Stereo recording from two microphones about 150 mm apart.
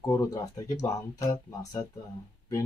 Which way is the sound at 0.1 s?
20° left (ahead or behind).